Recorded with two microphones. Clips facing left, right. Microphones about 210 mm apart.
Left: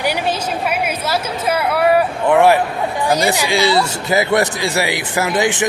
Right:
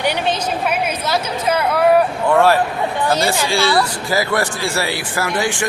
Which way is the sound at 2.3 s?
15° left (ahead or behind).